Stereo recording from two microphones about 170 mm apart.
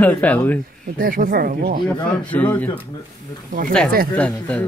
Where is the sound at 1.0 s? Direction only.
55° right (ahead or behind).